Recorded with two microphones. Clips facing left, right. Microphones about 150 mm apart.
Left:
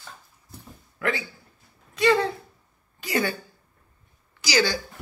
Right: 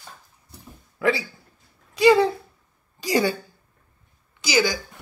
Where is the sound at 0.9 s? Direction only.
15° right (ahead or behind).